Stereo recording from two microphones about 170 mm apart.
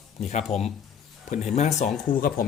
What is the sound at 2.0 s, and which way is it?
Speech, 55° left (ahead or behind).